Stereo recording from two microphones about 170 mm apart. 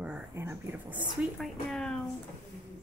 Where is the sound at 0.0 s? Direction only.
10° right (ahead or behind).